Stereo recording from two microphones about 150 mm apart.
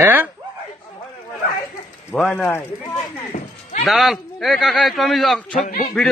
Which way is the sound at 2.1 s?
Centre (ahead or behind).